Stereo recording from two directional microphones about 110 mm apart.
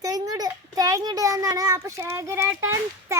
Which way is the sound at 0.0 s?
35° right (ahead or behind).